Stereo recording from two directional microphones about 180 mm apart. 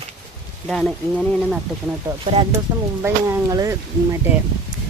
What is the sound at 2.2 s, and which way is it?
Speech, 30° right (ahead or behind).